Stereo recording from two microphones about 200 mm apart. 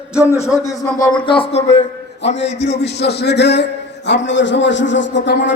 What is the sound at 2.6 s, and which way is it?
A man's voice, 60° left (ahead or behind).